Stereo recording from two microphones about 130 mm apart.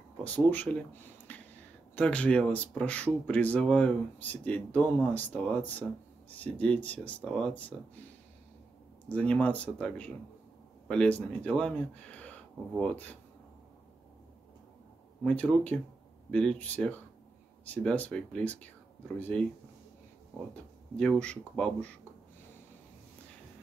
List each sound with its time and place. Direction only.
0.2 s speech: 10° left (ahead or behind)
1.3 s a sound: 10° left (ahead or behind)
2.0 s speech: 10° left (ahead or behind)
9.1 s speech: 10° left (ahead or behind)
15.2 s speech: 10° left (ahead or behind)